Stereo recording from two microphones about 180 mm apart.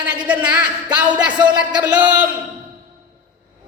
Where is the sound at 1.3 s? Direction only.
25° right (ahead or behind).